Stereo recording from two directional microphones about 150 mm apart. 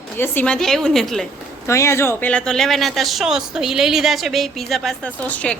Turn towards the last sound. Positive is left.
turn(degrees=10)  # may be behind; listen again after turning